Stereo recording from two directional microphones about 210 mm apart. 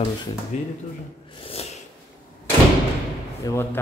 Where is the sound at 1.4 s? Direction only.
30° left (ahead or behind).